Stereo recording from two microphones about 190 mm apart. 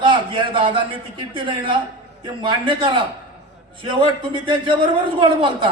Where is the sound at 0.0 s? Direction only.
25° right (ahead or behind).